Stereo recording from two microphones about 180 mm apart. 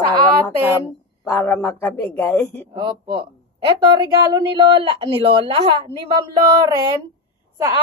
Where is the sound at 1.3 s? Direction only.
10° left (ahead or behind).